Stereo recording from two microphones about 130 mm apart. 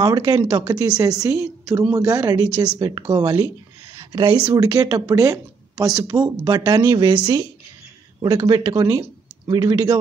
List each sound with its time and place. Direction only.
0.0 s speech: 30° right (ahead or behind)
4.1 s speech: 40° right (ahead or behind)
4.6 s speech: 25° right (ahead or behind)
8.2 s speech: 30° right (ahead or behind)